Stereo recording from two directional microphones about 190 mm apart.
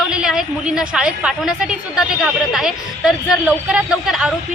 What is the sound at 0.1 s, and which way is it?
A woman's voice, 5° right (ahead or behind).